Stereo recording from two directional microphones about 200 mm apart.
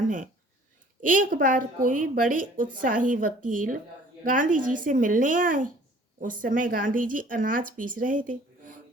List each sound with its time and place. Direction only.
1.0 s a woman's voice: 40° right (ahead or behind)